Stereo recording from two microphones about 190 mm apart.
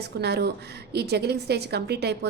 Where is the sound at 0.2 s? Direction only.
60° right (ahead or behind).